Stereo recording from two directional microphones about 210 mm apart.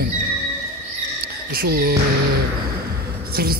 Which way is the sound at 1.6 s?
45° right (ahead or behind).